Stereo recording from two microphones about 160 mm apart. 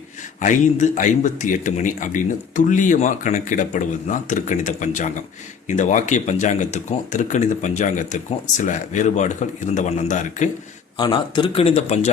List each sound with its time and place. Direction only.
0.3 s speech: 50° left (ahead or behind)
10.9 s a man's voice: 30° left (ahead or behind)